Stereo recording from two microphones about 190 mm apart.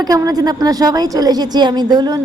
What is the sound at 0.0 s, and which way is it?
A woman's voice, 20° right (ahead or behind).